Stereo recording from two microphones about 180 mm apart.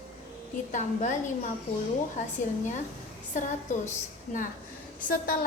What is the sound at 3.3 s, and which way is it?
Speech, 40° left (ahead or behind).